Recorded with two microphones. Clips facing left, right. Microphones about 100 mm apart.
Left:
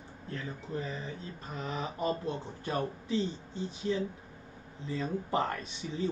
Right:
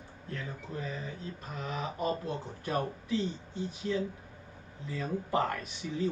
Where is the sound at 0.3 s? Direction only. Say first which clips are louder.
Left 2 dB; 30° left (ahead or behind).